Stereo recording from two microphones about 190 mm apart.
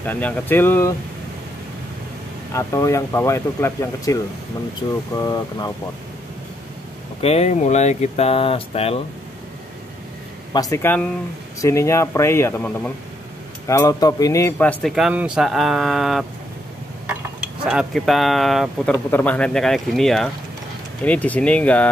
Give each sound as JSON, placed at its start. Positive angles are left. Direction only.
{"t": 0.0, "sound": "speech", "side_deg": 10}
{"t": 2.5, "sound": "speech", "side_deg": 15}
{"t": 7.2, "sound": "speech", "side_deg": 35}
{"t": 10.5, "sound": "speech", "side_deg": 15}
{"t": 13.7, "sound": "a sound", "side_deg": 15}
{"t": 21.0, "sound": "speech", "side_deg": 10}